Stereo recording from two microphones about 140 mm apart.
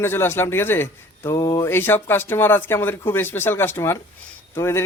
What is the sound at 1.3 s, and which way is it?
Speech, 25° left (ahead or behind).